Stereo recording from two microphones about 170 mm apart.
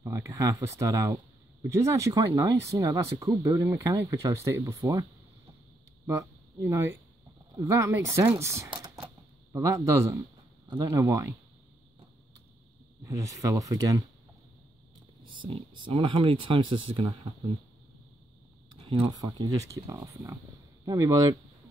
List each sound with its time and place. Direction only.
0.0 s speech: 15° right (ahead or behind)
6.0 s speech: 15° right (ahead or behind)
13.0 s speech: 20° right (ahead or behind)
15.2 s speech: 30° right (ahead or behind)
18.7 s speech: 25° right (ahead or behind)